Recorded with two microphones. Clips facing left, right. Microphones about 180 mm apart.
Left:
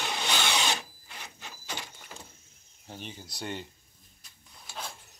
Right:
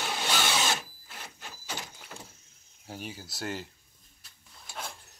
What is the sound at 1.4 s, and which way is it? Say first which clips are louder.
Sliding door: right 1 dB; 10° right (ahead or behind).